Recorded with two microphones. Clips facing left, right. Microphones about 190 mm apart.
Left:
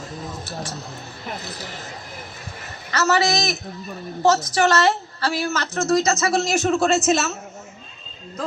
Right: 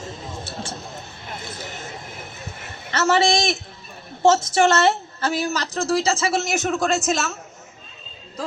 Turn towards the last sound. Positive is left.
turn(degrees=5)  # may be behind; listen again after turning